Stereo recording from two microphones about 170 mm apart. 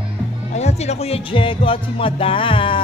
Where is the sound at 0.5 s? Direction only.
40° left (ahead or behind).